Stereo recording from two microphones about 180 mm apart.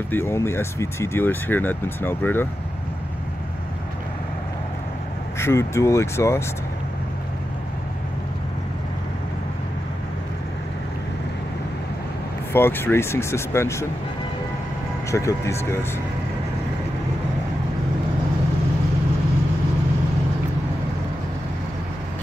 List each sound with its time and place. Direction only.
0.1 s speech: 15° left (ahead or behind)
5.4 s speech: 15° left (ahead or behind)
12.5 s speech: 10° left (ahead or behind)
15.0 s speech: 15° left (ahead or behind)